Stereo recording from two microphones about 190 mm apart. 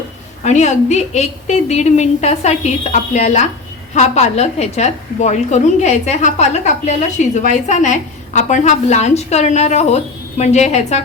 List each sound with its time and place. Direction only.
0.4 s a woman's voice: 35° left (ahead or behind)